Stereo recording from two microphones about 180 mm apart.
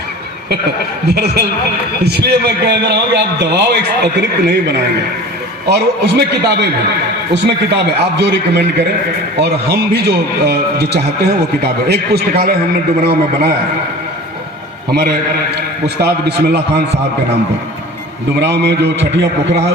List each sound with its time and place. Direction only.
1.0 s a man's voice: 65° right (ahead or behind)
15.5 s a man's voice: 65° right (ahead or behind)
18.3 s a man's voice: 70° right (ahead or behind)